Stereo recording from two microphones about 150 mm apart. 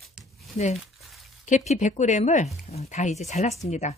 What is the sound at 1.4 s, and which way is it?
Speech, 50° left (ahead or behind).